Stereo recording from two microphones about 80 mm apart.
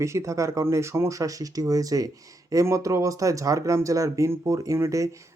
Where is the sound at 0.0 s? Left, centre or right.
Right.